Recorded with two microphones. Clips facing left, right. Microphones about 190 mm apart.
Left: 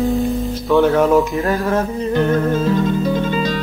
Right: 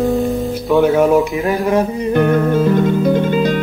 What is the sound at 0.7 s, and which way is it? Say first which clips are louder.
Music: right 1 dB; 15° right (ahead or behind).